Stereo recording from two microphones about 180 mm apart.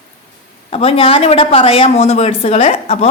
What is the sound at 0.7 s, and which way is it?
Speech, 30° left (ahead or behind).